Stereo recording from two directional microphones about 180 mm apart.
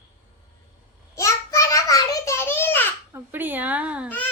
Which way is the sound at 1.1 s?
15° left (ahead or behind).